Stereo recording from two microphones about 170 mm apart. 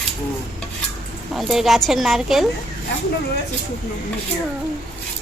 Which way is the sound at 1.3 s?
Centre (ahead or behind).